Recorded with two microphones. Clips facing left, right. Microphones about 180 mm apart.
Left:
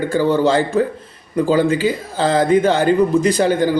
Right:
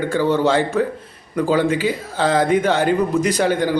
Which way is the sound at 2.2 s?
30° left (ahead or behind).